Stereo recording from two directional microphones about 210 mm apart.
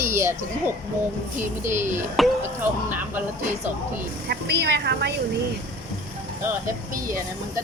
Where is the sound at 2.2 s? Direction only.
10° right (ahead or behind).